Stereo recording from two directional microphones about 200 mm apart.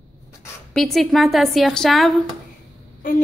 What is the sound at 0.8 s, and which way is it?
A woman's voice, centre (ahead or behind).